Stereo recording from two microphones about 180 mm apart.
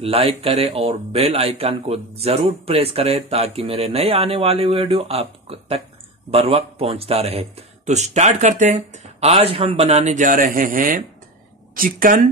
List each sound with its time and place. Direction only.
0.0 s speech: 35° right (ahead or behind); by 12.2 s 50° right (ahead or behind)